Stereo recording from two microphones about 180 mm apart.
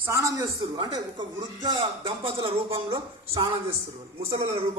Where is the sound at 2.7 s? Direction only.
20° right (ahead or behind).